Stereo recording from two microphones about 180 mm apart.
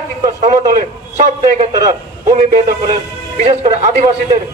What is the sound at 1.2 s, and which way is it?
A man's voice, 40° right (ahead or behind).